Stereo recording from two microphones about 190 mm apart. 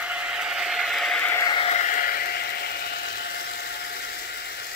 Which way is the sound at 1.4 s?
30° left (ahead or behind).